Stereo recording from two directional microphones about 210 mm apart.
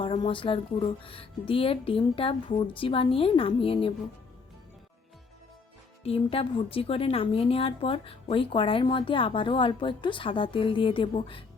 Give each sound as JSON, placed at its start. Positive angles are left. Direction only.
{"t": 0.0, "sound": "a woman's voice", "side_deg": 25}
{"t": 6.0, "sound": "a woman's voice", "side_deg": 30}